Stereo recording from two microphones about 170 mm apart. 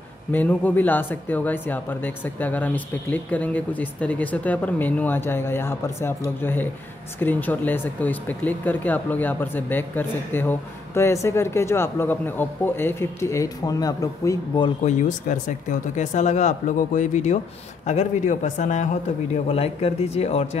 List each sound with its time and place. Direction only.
0.3 s speech: 10° left (ahead or behind)
14.8 s speech: 45° left (ahead or behind)